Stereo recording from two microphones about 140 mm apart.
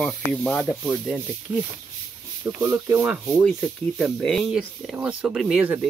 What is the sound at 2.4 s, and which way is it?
Speech, 20° right (ahead or behind).